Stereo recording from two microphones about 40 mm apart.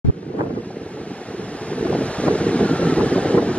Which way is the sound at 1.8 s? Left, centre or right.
Left.